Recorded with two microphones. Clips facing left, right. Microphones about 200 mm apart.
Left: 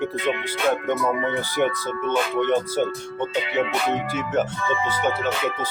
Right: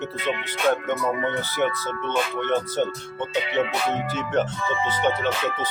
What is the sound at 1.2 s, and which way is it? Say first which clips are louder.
Speech: left 2 dB; 15° left (ahead or behind).